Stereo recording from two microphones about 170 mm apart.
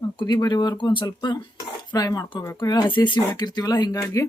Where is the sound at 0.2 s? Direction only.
25° left (ahead or behind).